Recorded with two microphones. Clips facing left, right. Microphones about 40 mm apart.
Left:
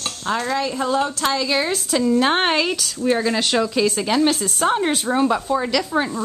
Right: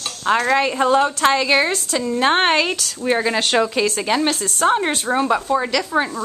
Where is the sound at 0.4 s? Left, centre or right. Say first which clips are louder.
Right 5 dB; right.